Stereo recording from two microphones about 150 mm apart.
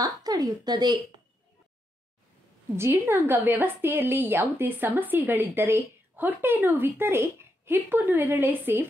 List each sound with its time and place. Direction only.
0.0 s a woman's voice: 25° right (ahead or behind)
2.7 s a woman's voice: 15° right (ahead or behind)